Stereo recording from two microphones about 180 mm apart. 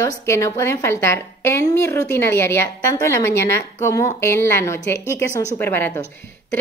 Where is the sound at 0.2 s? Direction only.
15° left (ahead or behind).